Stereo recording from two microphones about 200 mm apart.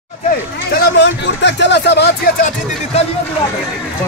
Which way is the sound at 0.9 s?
60° left (ahead or behind).